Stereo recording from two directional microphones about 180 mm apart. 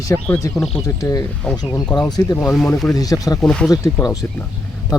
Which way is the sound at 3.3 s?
5° left (ahead or behind).